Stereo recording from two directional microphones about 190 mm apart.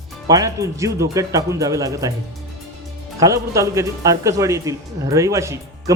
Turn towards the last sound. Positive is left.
turn(degrees=-15)  # may be behind; listen again after turning